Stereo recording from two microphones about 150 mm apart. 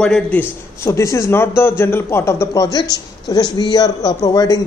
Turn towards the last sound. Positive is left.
turn(degrees=25)  # may be behind; listen again after turning